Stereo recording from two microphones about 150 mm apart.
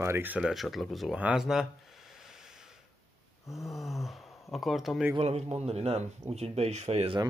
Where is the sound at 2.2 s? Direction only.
5° right (ahead or behind).